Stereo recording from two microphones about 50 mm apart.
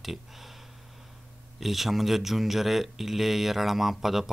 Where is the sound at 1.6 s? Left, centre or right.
Centre.